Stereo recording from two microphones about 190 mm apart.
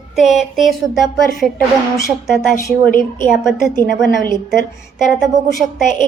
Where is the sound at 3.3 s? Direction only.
Centre (ahead or behind).